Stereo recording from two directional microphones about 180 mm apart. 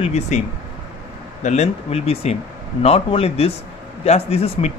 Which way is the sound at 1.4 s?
40° left (ahead or behind).